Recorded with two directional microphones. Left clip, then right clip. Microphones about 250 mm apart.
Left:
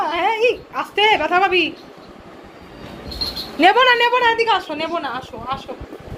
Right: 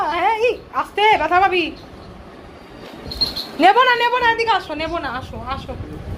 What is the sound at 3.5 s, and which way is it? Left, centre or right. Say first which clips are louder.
A woman's voice: even; centre.